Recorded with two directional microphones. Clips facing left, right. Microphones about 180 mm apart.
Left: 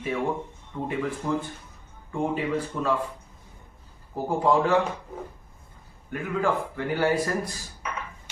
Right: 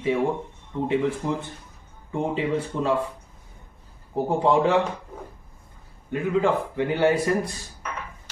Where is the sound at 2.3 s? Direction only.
25° right (ahead or behind).